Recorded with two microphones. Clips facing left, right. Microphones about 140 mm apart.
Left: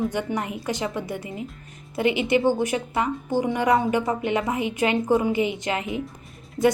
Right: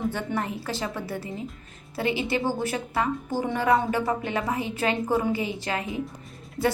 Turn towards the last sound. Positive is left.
turn(degrees=-5)  # may be behind; listen again after turning